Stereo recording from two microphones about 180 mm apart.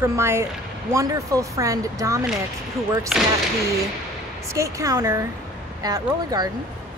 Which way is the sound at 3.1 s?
Centre (ahead or behind).